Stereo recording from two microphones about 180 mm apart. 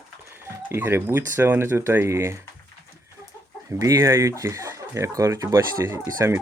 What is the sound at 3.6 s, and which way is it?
Speech, 15° right (ahead or behind).